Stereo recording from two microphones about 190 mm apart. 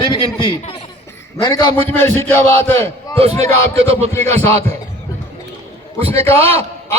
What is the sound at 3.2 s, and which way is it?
Speech, 35° right (ahead or behind).